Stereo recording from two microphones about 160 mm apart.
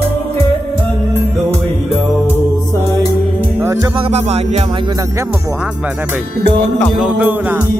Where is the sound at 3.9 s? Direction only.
40° right (ahead or behind).